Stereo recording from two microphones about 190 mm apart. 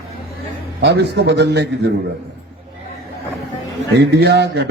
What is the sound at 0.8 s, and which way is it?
A man's voice, 60° right (ahead or behind).